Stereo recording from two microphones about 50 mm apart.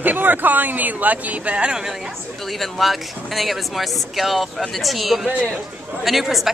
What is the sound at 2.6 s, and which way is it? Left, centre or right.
A man's voice, centre.